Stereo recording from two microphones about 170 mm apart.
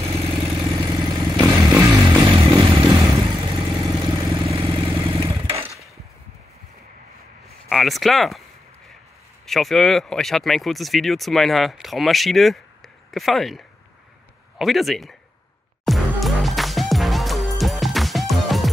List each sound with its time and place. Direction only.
0.0 s vehicle: 35° right (ahead or behind)
1.3 s motorcycle: 25° right (ahead or behind)
3.0 s vehicle: 15° right (ahead or behind)
3.3 s vehicle: 30° right (ahead or behind)
7.4 s a sound: centre (ahead or behind)
9.5 s speech: centre (ahead or behind)
15.8 s music: centre (ahead or behind)